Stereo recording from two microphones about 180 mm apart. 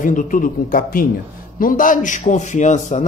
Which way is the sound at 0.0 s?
45° left (ahead or behind).